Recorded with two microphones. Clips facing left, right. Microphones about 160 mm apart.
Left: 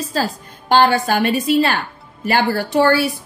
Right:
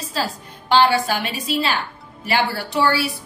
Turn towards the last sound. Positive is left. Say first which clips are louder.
# left 5 dB
turn(degrees=50)  # may be behind; listen again after turning